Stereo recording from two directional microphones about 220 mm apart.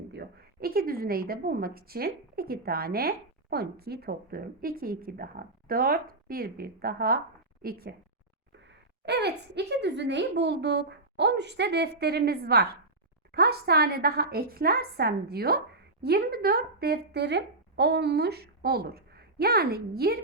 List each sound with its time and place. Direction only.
0.1 s a woman's voice: 45° right (ahead or behind)